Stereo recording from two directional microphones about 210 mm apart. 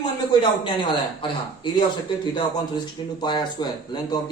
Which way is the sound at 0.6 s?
25° left (ahead or behind).